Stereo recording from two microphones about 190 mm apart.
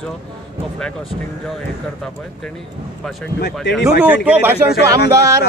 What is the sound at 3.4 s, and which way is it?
Speech, 60° left (ahead or behind).